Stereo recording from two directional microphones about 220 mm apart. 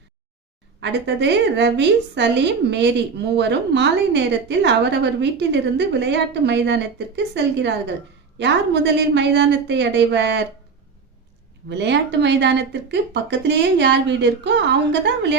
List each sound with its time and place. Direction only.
0.8 s a woman's voice: 50° right (ahead or behind)
11.7 s a woman's voice: 50° right (ahead or behind)